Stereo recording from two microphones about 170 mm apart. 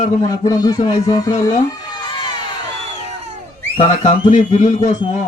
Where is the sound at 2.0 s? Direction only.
30° left (ahead or behind).